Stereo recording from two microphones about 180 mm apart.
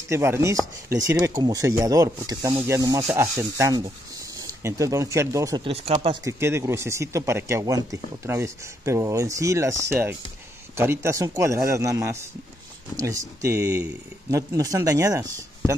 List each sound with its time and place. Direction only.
0.1 s speech: 15° right (ahead or behind)
5.6 s speech: 35° right (ahead or behind)
6.2 s speech: 15° right (ahead or behind)